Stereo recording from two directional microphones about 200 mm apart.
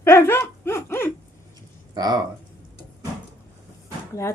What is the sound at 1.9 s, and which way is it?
Speech, 20° right (ahead or behind).